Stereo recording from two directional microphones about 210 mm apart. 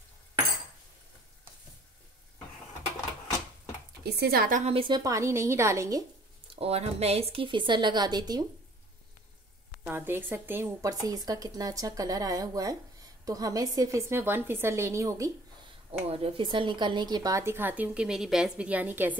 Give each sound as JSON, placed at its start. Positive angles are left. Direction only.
{"t": 4.0, "sound": "a woman's voice", "side_deg": -45}
{"t": 6.4, "sound": "a woman's voice", "side_deg": -25}
{"t": 9.8, "sound": "a woman's voice", "side_deg": -10}
{"t": 16.1, "sound": "a woman's voice", "side_deg": -25}